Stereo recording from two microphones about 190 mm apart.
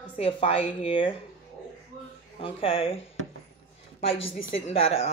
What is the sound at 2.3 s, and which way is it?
Speech, 30° left (ahead or behind).